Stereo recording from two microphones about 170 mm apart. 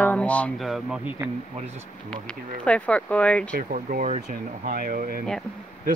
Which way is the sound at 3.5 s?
50° right (ahead or behind).